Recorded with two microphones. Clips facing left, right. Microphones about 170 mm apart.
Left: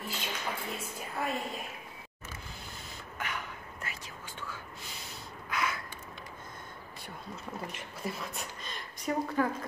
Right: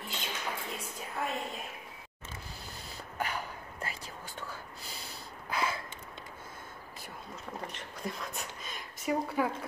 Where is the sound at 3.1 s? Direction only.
35° right (ahead or behind).